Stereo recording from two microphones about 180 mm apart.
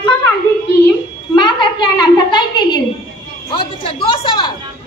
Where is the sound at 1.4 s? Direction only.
25° left (ahead or behind).